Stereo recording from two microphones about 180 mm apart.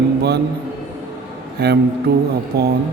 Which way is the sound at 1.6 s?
60° right (ahead or behind).